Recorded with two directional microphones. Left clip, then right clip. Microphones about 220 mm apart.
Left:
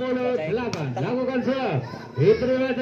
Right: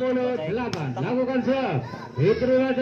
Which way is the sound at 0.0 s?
50° left (ahead or behind).